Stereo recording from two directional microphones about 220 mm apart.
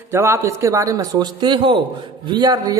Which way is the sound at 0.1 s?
10° right (ahead or behind).